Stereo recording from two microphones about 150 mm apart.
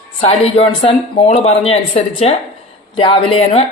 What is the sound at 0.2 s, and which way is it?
A woman's voice, 45° left (ahead or behind).